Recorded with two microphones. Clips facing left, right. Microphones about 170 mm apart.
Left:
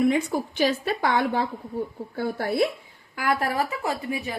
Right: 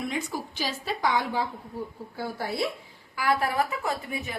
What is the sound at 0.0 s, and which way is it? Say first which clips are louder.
A woman's voice: left 9 dB; 60° left (ahead or behind).